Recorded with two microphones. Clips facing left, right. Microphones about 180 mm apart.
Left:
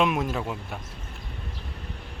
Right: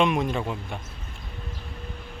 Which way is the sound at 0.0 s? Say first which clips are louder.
Right 2 dB; 5° left (ahead or behind).